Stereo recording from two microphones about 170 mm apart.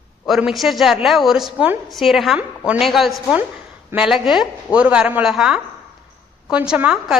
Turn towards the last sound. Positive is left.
turn(degrees=-5)  # may be behind; listen again after turning